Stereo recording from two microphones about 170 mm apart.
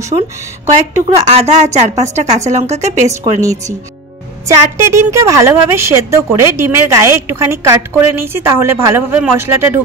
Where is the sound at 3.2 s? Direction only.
20° right (ahead or behind).